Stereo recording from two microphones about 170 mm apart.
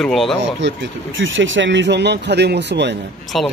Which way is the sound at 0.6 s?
90° right.